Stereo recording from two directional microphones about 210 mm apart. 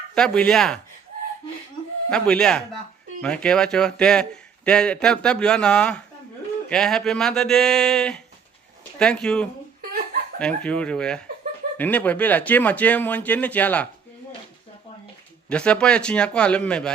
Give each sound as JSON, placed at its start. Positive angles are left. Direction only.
{"t": 0.1, "sound": "a man's voice", "side_deg": 5}
{"t": 2.0, "sound": "a man's voice", "side_deg": 5}
{"t": 15.4, "sound": "a man's voice", "side_deg": 5}